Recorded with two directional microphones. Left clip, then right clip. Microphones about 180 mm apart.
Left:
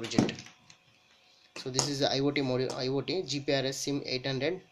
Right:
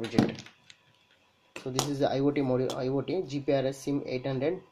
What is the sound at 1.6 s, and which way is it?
Speech, 10° right (ahead or behind).